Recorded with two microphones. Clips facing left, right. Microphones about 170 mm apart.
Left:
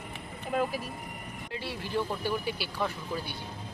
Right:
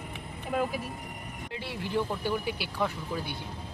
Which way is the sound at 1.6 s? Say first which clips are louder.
Right 1 dB; 20° right (ahead or behind).